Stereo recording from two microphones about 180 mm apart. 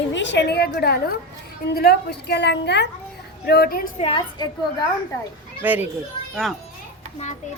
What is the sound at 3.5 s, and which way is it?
Speech, 60° left (ahead or behind).